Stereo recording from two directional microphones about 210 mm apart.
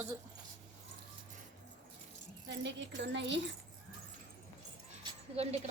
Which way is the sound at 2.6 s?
55° right (ahead or behind).